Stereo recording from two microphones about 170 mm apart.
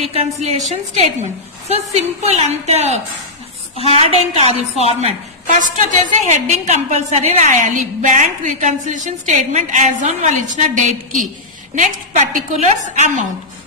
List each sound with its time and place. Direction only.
0.0 s a woman's voice: 35° right (ahead or behind)